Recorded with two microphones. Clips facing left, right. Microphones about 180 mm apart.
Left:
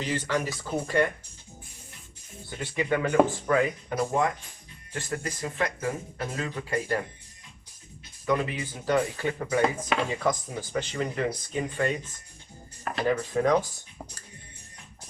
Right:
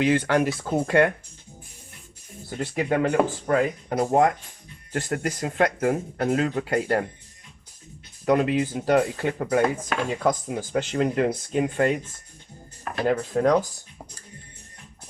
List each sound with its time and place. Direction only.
0.0 s speech: 60° right (ahead or behind)
2.5 s speech: 45° right (ahead or behind)
3.9 s speech: 65° right (ahead or behind)
8.2 s speech: 65° right (ahead or behind)
8.6 s speech: 45° right (ahead or behind)
8.9 s speech: 60° right (ahead or behind)
13.1 s speech: 65° right (ahead or behind)